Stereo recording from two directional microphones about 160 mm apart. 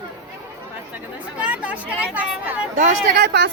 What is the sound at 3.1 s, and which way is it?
Speech, 90° right.